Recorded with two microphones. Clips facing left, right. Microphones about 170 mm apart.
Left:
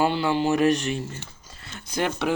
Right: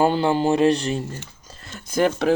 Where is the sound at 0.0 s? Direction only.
45° right (ahead or behind).